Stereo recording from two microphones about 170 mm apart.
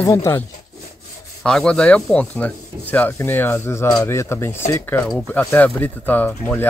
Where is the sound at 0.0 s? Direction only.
15° left (ahead or behind).